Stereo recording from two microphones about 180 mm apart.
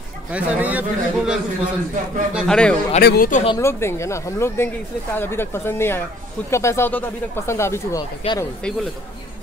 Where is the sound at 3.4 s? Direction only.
15° left (ahead or behind).